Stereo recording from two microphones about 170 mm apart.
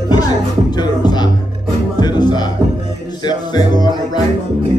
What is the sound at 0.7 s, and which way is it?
Music, 25° left (ahead or behind).